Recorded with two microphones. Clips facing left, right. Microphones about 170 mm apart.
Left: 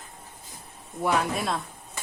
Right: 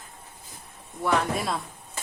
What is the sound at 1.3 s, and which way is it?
Speech, centre (ahead or behind).